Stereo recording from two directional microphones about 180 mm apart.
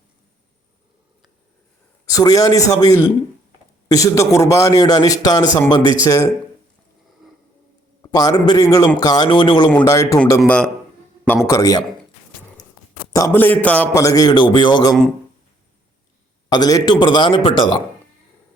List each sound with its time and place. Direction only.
2.0 s a man's voice: 20° left (ahead or behind)
8.0 s a man's voice: 20° left (ahead or behind)
11.4 s a man's voice: 20° left (ahead or behind)
13.1 s a man's voice: 15° left (ahead or behind)
16.5 s a man's voice: 20° left (ahead or behind)